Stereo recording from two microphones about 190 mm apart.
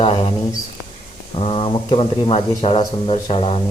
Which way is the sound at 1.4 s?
30° left (ahead or behind).